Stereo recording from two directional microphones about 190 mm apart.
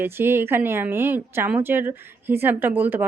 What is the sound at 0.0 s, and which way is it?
A woman's voice, 10° right (ahead or behind).